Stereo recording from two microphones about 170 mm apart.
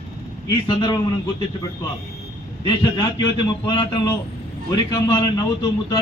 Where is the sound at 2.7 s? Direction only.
25° left (ahead or behind).